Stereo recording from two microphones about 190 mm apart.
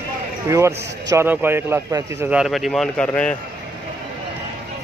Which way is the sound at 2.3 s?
Centre (ahead or behind).